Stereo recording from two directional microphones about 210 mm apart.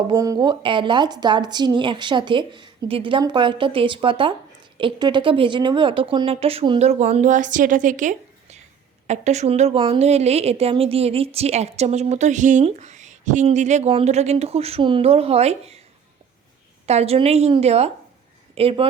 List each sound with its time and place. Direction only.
0.1 s a woman's voice: 20° right (ahead or behind)
16.8 s a woman's voice: 30° right (ahead or behind)